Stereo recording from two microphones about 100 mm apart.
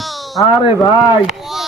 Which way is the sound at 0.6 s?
50° left (ahead or behind).